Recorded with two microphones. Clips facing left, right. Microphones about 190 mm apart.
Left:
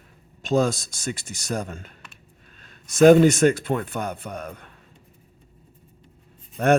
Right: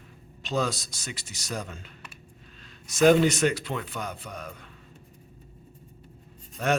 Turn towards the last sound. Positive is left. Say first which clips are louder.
# left 7 dB
turn(degrees=55)  # may be behind; listen again after turning